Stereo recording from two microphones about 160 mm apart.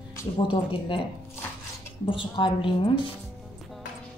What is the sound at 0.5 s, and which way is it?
Speech, 35° left (ahead or behind).